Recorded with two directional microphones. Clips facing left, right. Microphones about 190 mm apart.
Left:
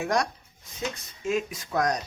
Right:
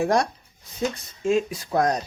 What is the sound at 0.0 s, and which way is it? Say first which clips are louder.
Speech: right 5 dB; 30° right (ahead or behind).